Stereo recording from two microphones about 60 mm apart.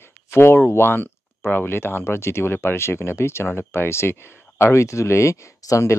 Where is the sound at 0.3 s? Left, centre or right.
Left.